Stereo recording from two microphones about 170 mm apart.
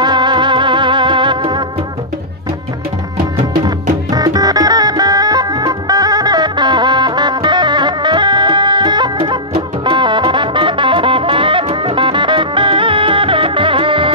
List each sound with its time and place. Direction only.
0.0 s music: 25° right (ahead or behind)
4.1 s music: 20° right (ahead or behind)